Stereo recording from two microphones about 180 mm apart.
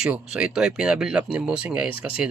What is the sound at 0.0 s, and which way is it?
Speech, 5° right (ahead or behind).